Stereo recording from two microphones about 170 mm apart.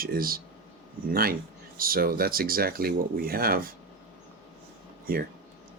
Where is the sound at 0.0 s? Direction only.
60° right (ahead or behind).